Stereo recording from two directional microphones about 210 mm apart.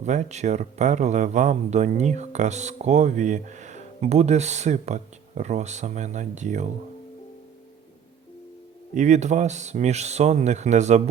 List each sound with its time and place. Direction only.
0.0 s speech: 35° right (ahead or behind)
9.0 s speech: 35° right (ahead or behind)